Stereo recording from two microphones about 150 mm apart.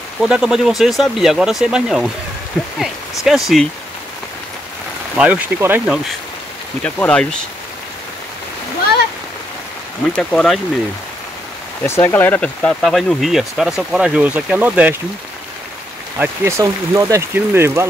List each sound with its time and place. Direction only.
0.2 s speech: 5° right (ahead or behind)
3.3 s speech: centre (ahead or behind)
5.1 s speech: 10° right (ahead or behind)
6.8 s speech: 10° left (ahead or behind)
10.1 s speech: 5° left (ahead or behind)
11.8 s speech: 15° left (ahead or behind); by 15.0 s 10° right (ahead or behind)
16.2 s speech: 20° right (ahead or behind)